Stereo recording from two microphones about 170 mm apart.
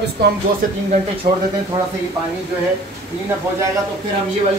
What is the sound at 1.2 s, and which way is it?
Speech, 50° right (ahead or behind).